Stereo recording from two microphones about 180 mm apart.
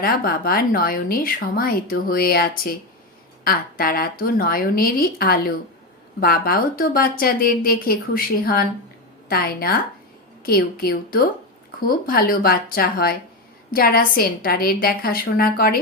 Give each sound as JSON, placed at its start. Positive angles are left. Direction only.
{"t": 0.0, "sound": "speech", "side_deg": 55}